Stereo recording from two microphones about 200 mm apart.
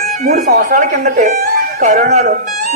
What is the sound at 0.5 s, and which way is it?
A man's voice, 45° right (ahead or behind).